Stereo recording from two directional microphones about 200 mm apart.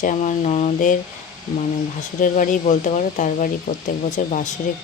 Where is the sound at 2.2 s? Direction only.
40° left (ahead or behind).